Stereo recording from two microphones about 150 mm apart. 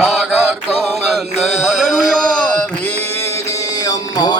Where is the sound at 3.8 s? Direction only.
25° left (ahead or behind).